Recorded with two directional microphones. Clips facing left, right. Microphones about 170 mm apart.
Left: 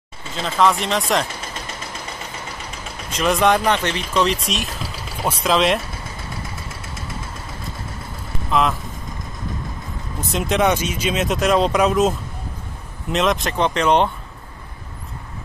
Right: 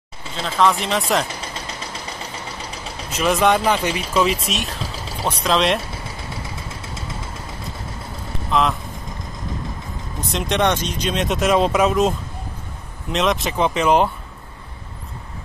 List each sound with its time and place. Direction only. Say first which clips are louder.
0.4 s speech: even; centre (ahead or behind)
3.1 s speech: even; centre (ahead or behind)
8.5 s speech: even; centre (ahead or behind)
10.3 s speech: left 1 dB; 5° left (ahead or behind)